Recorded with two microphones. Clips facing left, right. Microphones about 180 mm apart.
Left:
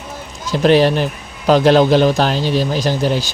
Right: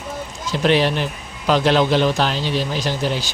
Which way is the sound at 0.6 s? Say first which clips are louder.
Left 5 dB; 40° left (ahead or behind).